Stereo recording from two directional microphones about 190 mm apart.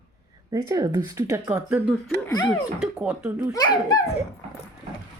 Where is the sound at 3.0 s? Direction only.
5° right (ahead or behind).